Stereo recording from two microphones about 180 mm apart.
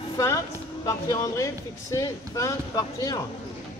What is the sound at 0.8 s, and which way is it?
Speech, 20° left (ahead or behind).